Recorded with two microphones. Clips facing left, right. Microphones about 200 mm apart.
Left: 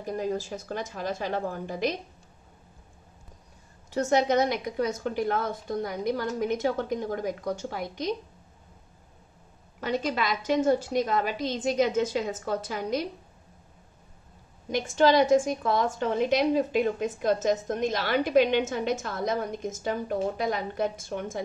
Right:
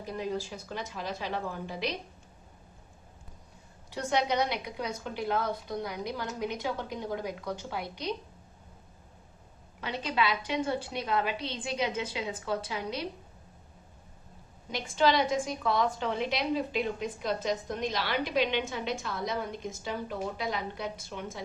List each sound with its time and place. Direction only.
0.0 s a woman's voice: 45° left (ahead or behind)
3.9 s a woman's voice: 45° left (ahead or behind)
9.8 s a woman's voice: 45° left (ahead or behind)
14.7 s a woman's voice: 50° left (ahead or behind)